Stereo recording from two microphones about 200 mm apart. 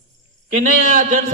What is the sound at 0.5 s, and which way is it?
Speech, 45° right (ahead or behind).